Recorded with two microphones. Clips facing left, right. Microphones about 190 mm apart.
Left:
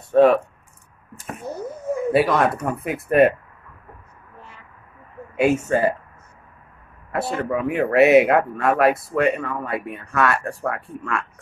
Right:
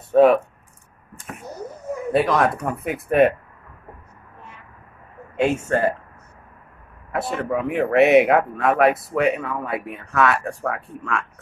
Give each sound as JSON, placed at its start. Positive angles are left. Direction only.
{"t": 0.1, "sound": "speech", "side_deg": 0}
{"t": 1.5, "sound": "a sound", "side_deg": 30}
{"t": 2.1, "sound": "speech", "side_deg": 5}
{"t": 5.3, "sound": "speech", "side_deg": 10}
{"t": 7.1, "sound": "speech", "side_deg": 0}